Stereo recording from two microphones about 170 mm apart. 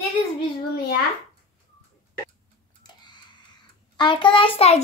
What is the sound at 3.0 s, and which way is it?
Typing, 25° left (ahead or behind).